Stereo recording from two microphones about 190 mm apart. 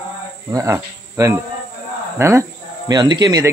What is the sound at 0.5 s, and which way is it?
A man's voice, 15° right (ahead or behind).